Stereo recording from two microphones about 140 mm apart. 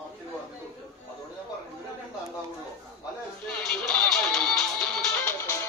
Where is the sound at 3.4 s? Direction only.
5° left (ahead or behind).